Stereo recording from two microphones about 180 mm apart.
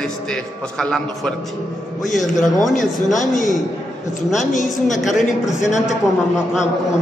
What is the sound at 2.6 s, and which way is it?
Speech, 45° left (ahead or behind).